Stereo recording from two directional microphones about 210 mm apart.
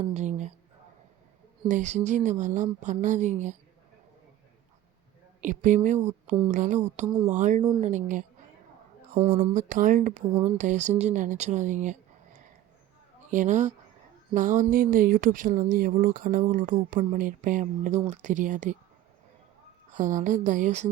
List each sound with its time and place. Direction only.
0.0 s a sound: 30° right (ahead or behind)
1.6 s speech: 35° right (ahead or behind)
5.4 s a woman's voice: 35° right (ahead or behind)
9.6 s speech: 40° right (ahead or behind)
19.9 s speech: 35° right (ahead or behind)